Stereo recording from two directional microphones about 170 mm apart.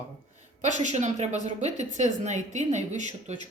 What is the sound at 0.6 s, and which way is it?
Speech, 45° right (ahead or behind).